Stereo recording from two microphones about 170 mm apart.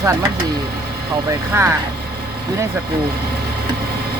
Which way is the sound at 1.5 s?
15° right (ahead or behind).